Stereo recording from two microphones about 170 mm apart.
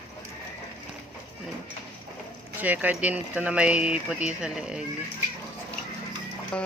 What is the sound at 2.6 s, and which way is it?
Speech, 10° right (ahead or behind).